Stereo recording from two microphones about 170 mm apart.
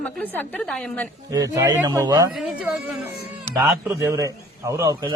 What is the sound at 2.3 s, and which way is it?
Speech, 5° right (ahead or behind).